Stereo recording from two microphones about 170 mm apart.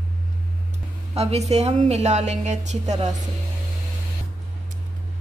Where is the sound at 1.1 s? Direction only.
35° right (ahead or behind).